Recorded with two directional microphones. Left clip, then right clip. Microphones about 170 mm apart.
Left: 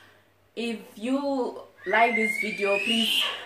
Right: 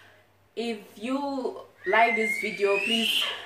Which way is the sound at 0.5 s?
15° left (ahead or behind).